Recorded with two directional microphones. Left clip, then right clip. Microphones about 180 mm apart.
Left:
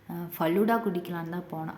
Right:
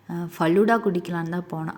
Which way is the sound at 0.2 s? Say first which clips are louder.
Right 6 dB; 30° right (ahead or behind).